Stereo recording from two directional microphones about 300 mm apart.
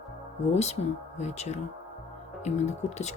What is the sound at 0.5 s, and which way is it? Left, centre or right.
Speech, left.